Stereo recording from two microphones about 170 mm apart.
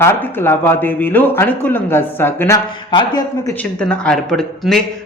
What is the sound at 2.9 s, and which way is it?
Speech, 25° left (ahead or behind).